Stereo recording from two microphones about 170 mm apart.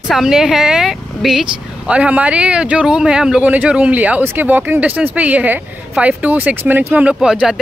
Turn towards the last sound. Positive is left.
turn(degrees=-5)  # may be behind; listen again after turning